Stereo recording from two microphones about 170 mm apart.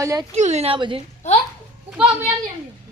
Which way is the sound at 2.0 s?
30° right (ahead or behind).